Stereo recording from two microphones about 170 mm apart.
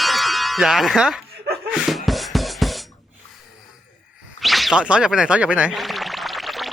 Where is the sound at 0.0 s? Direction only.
Centre (ahead or behind).